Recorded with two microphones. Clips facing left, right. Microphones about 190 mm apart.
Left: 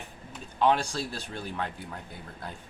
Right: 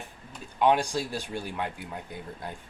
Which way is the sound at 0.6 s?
15° right (ahead or behind).